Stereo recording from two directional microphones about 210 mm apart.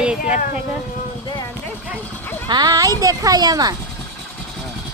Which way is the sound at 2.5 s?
20° right (ahead or behind).